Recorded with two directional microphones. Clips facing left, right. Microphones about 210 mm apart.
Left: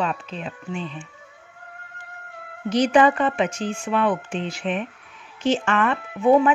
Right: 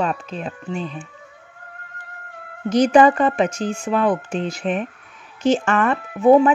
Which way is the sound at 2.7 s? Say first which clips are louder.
Right 4 dB; 45° right (ahead or behind).